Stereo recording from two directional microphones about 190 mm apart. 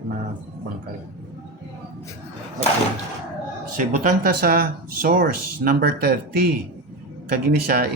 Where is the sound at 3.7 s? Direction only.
45° right (ahead or behind).